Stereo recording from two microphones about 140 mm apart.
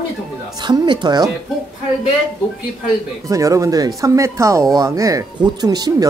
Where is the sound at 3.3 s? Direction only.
25° right (ahead or behind).